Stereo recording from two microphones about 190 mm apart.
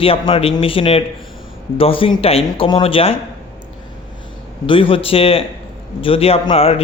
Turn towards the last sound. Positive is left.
turn(degrees=30)  # may be behind; listen again after turning